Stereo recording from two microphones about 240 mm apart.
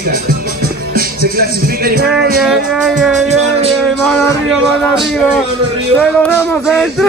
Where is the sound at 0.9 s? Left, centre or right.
Right.